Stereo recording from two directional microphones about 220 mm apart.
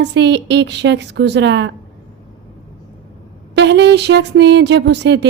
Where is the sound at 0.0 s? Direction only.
50° right (ahead or behind).